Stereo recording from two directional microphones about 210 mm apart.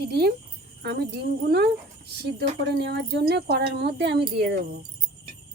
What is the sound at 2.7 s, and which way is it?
Speech, 50° right (ahead or behind).